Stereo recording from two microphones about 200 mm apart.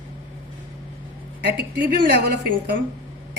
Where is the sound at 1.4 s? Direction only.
50° right (ahead or behind).